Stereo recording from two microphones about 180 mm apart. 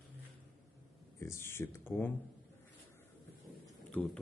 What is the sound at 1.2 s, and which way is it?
Speech, 15° left (ahead or behind).